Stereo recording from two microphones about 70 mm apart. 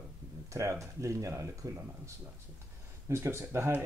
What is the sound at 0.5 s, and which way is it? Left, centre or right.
Speech, right.